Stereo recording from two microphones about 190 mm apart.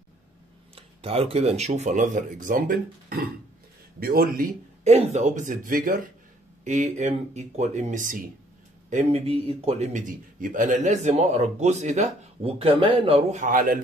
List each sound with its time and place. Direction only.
0.7 s a man's voice: 30° right (ahead or behind); by 4.5 s 50° right (ahead or behind)
4.8 s a man's voice: 35° right (ahead or behind)
8.9 s a man's voice: 30° right (ahead or behind)